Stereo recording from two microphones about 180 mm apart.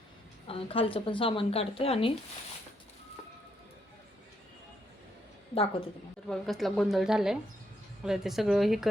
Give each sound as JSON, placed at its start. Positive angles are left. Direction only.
{"t": 0.4, "sound": "speech", "side_deg": 30}
{"t": 6.2, "sound": "a woman's voice", "side_deg": 0}